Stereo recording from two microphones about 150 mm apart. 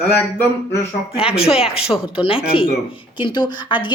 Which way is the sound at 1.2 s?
40° left (ahead or behind).